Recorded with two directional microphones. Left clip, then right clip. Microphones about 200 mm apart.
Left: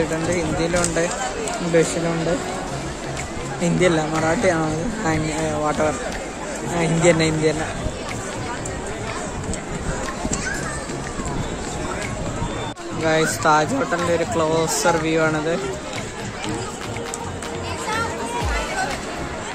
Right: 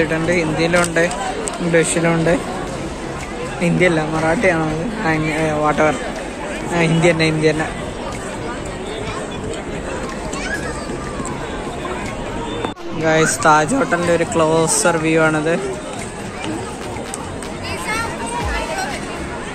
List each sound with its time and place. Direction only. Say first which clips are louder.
0.3 s speech: right 5 dB; 5° left (ahead or behind)
3.6 s speech: right 3 dB; 15° left (ahead or behind)
5.6 s speech: right 5 dB; centre (ahead or behind)
13.0 s speech: right 4 dB; 5° left (ahead or behind)